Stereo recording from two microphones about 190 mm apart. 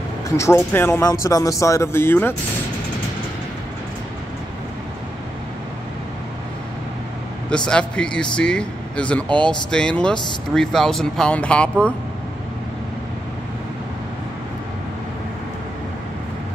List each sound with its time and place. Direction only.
0.4 s speech: 15° left (ahead or behind)
7.4 s speech: 5° left (ahead or behind)